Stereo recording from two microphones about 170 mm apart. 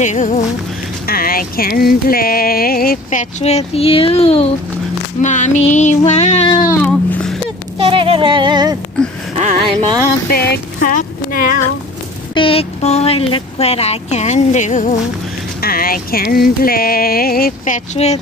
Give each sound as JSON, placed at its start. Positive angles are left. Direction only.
{"t": 0.0, "sound": "child singing", "side_deg": 45}
{"t": 1.0, "sound": "music", "side_deg": 60}
{"t": 5.2, "sound": "child singing", "side_deg": 45}
{"t": 6.7, "sound": "a sound", "side_deg": 10}
{"t": 7.8, "sound": "music", "side_deg": -30}
{"t": 9.4, "sound": "speech", "side_deg": -40}
{"t": 10.3, "sound": "music", "side_deg": 70}
{"t": 10.9, "sound": "a sound", "side_deg": 50}
{"t": 12.4, "sound": "speech", "side_deg": 35}
{"t": 15.6, "sound": "music", "side_deg": 60}